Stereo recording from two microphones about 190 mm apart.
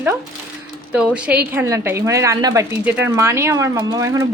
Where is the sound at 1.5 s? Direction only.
10° right (ahead or behind).